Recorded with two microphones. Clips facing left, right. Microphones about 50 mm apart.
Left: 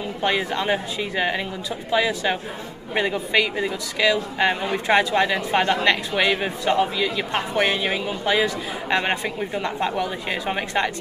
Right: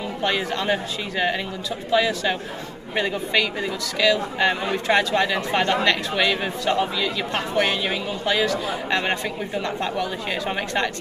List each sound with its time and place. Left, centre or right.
0.2 s a man's voice: centre